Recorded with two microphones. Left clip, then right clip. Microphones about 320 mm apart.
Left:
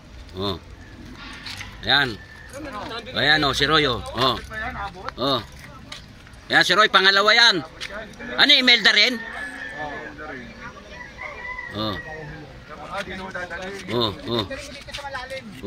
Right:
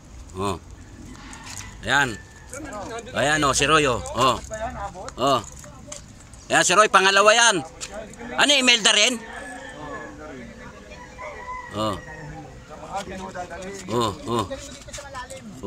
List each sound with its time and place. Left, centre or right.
0.4 s speech: centre
1.8 s speech: centre
3.2 s speech: centre
6.4 s a man's voice: centre
11.7 s speech: centre
13.8 s speech: centre